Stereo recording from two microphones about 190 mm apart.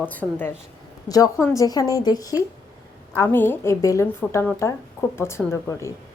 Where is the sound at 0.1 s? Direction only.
10° left (ahead or behind).